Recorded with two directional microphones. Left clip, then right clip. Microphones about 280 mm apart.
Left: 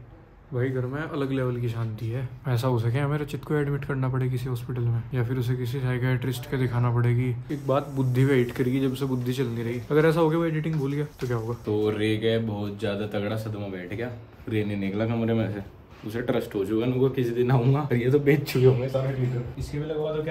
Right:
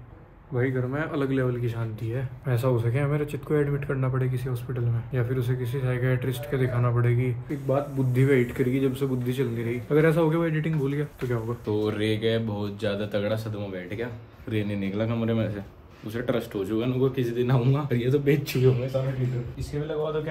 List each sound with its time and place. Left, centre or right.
0.6 s a man's voice: centre